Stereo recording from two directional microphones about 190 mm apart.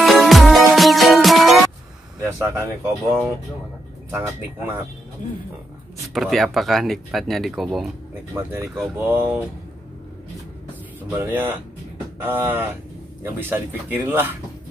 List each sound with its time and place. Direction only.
0.0 s music: centre (ahead or behind)
2.1 s speech: 15° right (ahead or behind)
6.1 s speech: centre (ahead or behind)
11.1 s speech: 10° right (ahead or behind)